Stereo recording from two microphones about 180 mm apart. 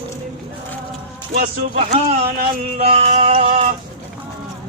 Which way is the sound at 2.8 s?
35° right (ahead or behind).